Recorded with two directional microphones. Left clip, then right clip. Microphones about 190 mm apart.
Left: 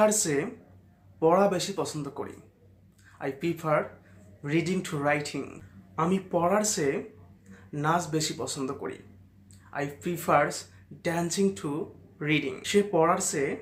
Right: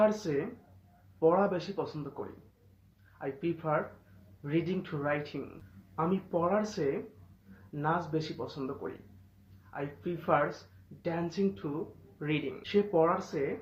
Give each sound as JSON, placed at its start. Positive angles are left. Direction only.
{"t": 0.0, "sound": "speech", "side_deg": 20}
{"t": 3.2, "sound": "speech", "side_deg": 20}
{"t": 9.7, "sound": "speech", "side_deg": 20}